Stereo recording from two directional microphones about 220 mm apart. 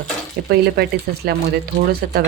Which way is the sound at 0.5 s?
45° right (ahead or behind).